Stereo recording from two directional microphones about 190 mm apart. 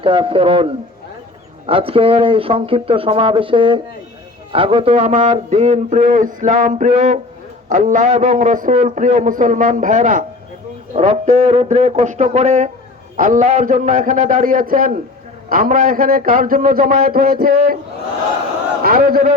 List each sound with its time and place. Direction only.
0.0 s a man's voice: 25° right (ahead or behind); by 17.7 s 50° right (ahead or behind)
18.8 s a man's voice: 50° right (ahead or behind)